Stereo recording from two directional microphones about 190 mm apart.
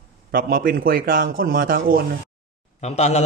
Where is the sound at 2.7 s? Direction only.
35° left (ahead or behind).